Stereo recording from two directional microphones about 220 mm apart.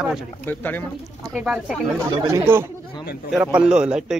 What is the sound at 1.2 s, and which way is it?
A man's voice, 5° right (ahead or behind).